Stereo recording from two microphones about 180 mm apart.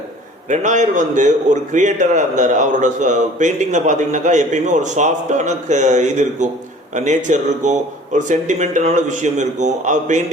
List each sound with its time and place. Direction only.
0.4 s a man's voice: 45° right (ahead or behind)